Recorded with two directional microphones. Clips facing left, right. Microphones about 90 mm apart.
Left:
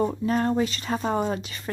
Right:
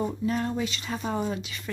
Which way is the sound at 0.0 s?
45° left (ahead or behind).